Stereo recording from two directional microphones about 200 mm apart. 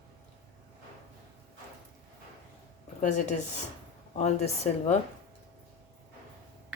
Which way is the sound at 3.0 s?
40° left (ahead or behind).